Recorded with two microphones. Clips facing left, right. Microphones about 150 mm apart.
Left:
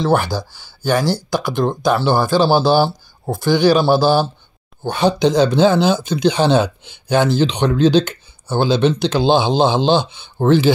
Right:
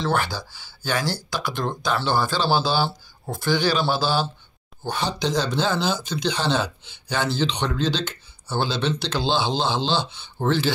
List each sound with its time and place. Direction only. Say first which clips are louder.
0.3 s a man's voice: left 9 dB; 45° left (ahead or behind)
4.8 s speech: left 10 dB; 60° left (ahead or behind)